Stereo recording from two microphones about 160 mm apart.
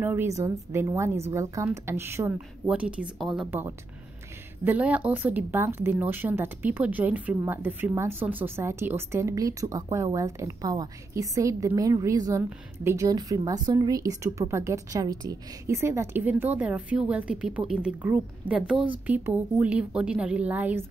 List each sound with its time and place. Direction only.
0.0 s speech: 15° right (ahead or behind)
3.4 s speech: 15° right (ahead or behind)